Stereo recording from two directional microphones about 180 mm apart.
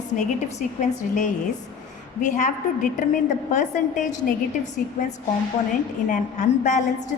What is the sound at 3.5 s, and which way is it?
A woman's voice, 45° left (ahead or behind).